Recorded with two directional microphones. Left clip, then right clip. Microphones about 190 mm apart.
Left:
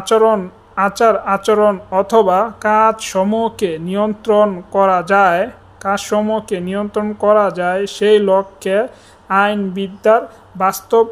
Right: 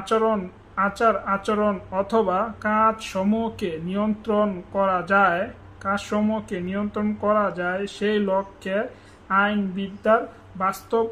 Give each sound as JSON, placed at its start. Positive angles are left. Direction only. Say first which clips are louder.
{"t": 0.0, "sound": "speech", "louder": "left 9 dB", "side_deg": 25}